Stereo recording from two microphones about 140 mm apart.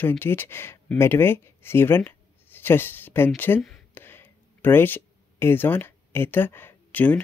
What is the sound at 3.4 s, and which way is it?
Speech, 15° left (ahead or behind).